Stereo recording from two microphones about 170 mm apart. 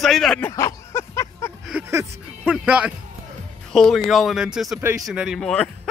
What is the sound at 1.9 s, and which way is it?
Music, 15° right (ahead or behind).